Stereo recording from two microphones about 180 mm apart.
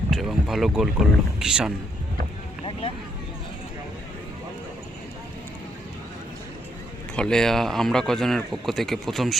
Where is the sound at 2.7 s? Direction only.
30° left (ahead or behind).